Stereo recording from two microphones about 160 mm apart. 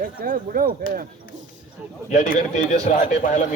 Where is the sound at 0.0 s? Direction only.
60° right (ahead or behind).